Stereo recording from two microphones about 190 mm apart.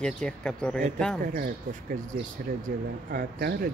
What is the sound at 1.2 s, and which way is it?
Speech, 50° right (ahead or behind).